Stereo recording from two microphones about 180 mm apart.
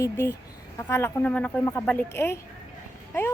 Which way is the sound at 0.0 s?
15° left (ahead or behind).